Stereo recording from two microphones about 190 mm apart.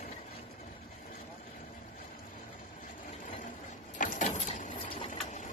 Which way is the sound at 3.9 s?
40° left (ahead or behind).